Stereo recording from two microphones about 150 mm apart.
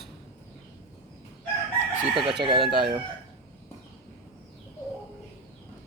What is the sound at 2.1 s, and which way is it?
Speech, 35° right (ahead or behind).